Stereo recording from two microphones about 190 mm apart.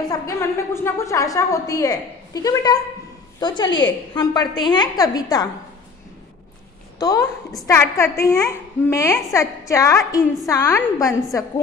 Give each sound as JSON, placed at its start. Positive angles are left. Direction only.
{"t": 0.0, "sound": "a child's voice", "side_deg": 15}
{"t": 7.0, "sound": "a woman's voice", "side_deg": 20}